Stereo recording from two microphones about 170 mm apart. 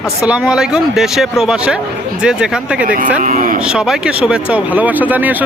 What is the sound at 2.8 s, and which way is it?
Speech, 55° right (ahead or behind).